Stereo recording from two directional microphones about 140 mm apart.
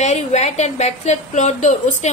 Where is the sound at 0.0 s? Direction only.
55° left (ahead or behind).